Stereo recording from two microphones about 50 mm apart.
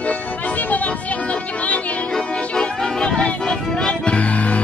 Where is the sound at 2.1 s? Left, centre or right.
Left.